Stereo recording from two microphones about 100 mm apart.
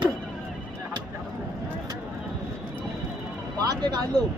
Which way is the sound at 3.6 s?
45° right (ahead or behind).